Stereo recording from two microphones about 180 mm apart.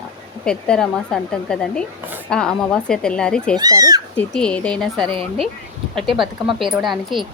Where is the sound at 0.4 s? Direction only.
5° left (ahead or behind).